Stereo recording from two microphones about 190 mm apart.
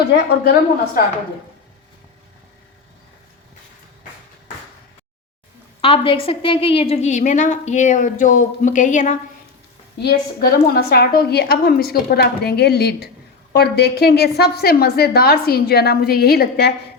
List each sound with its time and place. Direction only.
0.1 s a woman's voice: 60° left (ahead or behind)
5.8 s a woman's voice: 30° left (ahead or behind)
10.0 s a woman's voice: 55° left (ahead or behind)